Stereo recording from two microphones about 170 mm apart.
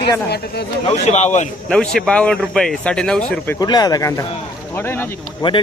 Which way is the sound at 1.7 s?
5° left (ahead or behind).